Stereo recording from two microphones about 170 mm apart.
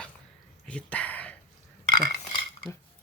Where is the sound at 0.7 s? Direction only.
5° left (ahead or behind).